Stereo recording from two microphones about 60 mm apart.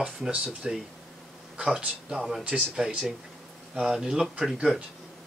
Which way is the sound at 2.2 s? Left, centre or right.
Centre.